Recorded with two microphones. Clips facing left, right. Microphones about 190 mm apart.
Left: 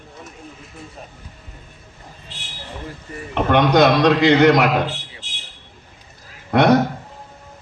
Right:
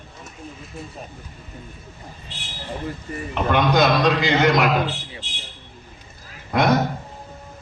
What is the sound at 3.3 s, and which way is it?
A man's voice, 65° left (ahead or behind).